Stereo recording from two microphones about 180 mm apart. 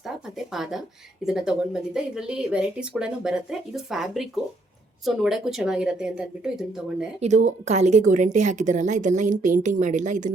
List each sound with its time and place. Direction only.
0.0 s a sound: centre (ahead or behind)
1.2 s speech: 5° right (ahead or behind)
7.2 s a woman's voice: 40° right (ahead or behind)